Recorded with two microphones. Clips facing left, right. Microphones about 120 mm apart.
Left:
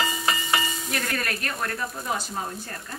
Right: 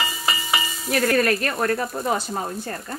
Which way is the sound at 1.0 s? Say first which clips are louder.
Right 14 dB; 35° right (ahead or behind).